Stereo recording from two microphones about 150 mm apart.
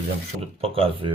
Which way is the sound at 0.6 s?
40° right (ahead or behind).